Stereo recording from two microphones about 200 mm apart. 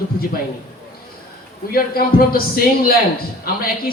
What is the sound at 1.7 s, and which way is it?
A man's voice, 50° left (ahead or behind).